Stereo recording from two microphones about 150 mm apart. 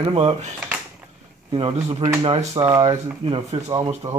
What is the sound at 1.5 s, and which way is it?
Speech, 40° right (ahead or behind).